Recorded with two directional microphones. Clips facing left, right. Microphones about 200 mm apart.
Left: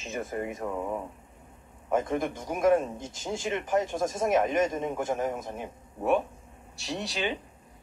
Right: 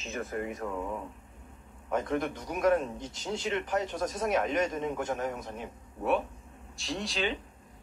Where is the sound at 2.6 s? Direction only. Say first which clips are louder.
Left 3 dB; 10° left (ahead or behind).